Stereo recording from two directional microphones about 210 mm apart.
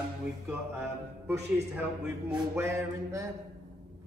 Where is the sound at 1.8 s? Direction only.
5° right (ahead or behind).